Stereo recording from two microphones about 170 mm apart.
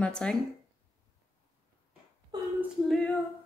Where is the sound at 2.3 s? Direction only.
25° right (ahead or behind).